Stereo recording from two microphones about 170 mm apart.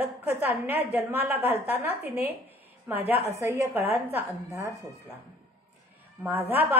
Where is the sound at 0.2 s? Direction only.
10° right (ahead or behind).